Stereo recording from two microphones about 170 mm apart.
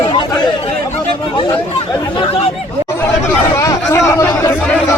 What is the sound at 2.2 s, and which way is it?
Speech, 35° left (ahead or behind).